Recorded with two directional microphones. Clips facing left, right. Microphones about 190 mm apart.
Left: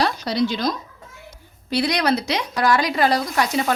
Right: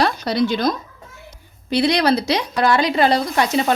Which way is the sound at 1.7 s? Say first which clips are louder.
Right 4 dB; 25° right (ahead or behind).